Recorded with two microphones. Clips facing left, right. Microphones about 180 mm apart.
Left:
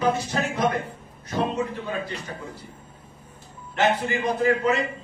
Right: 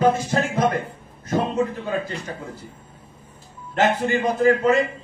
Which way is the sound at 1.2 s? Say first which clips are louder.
Right 3 dB; 50° right (ahead or behind).